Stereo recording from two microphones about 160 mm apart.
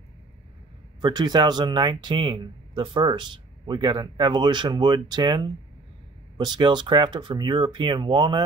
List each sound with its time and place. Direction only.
1.0 s speech: 25° right (ahead or behind)